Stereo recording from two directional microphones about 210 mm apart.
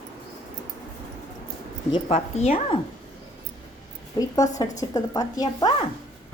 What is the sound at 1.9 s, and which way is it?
Speech, 30° left (ahead or behind).